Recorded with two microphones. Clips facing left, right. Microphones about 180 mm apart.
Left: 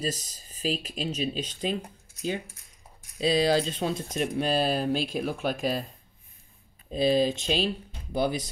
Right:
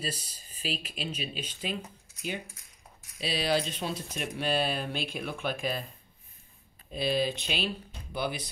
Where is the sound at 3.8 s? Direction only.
50° left (ahead or behind).